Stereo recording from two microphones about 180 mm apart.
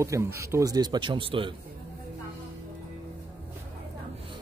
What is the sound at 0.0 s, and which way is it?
A man's voice, 15° right (ahead or behind).